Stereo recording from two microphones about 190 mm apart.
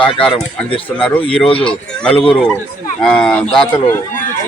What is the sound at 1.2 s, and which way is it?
Speech, 30° left (ahead or behind).